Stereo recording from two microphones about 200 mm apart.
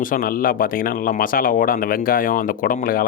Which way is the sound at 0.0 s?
45° left (ahead or behind).